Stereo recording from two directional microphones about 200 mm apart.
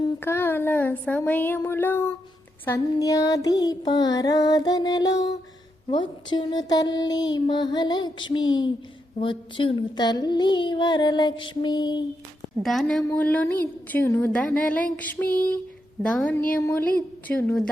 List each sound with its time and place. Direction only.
0.0 s speech: 10° left (ahead or behind)
2.6 s a sound: 15° left (ahead or behind)
12.6 s a woman's voice: centre (ahead or behind)